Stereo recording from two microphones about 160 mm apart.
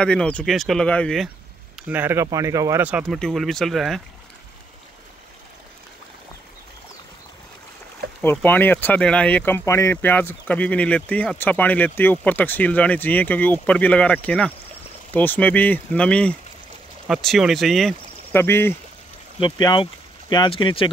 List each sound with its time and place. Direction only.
0.0 s speech: 5° left (ahead or behind)
1.9 s speech: 15° right (ahead or behind)
2.9 s speech: 5° right (ahead or behind)
8.2 s speech: 10° left (ahead or behind)
18.3 s speech: 15° left (ahead or behind)
19.4 s speech: 30° left (ahead or behind)